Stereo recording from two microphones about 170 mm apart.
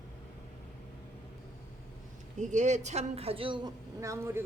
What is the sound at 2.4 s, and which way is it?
A woman's voice, 45° right (ahead or behind).